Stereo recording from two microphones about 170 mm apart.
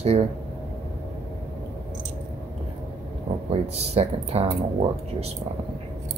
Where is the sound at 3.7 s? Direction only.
40° right (ahead or behind).